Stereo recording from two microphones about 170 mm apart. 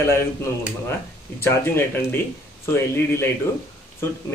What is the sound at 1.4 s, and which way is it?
Speech, 15° left (ahead or behind).